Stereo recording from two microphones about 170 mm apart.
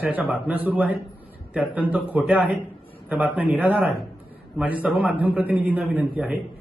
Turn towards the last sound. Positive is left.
turn(degrees=-10)  # may be behind; listen again after turning